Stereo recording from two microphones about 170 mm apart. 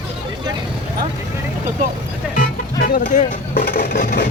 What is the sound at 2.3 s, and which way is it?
Music, 60° left (ahead or behind).